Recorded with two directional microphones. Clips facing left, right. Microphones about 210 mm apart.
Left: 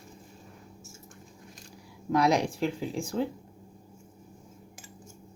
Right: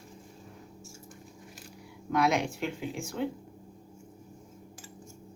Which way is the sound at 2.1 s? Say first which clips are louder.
Left 3 dB; 35° left (ahead or behind).